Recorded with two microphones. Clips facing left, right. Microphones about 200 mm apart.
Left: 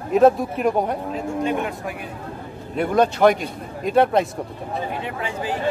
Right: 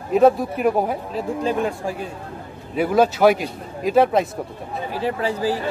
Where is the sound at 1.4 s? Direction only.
30° right (ahead or behind).